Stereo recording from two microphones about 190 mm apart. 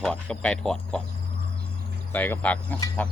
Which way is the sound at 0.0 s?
5° left (ahead or behind).